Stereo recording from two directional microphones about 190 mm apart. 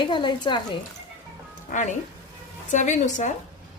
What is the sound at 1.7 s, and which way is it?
A woman's voice, 45° left (ahead or behind).